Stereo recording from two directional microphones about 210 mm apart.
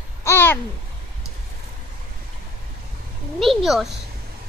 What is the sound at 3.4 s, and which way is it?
Speech, centre (ahead or behind).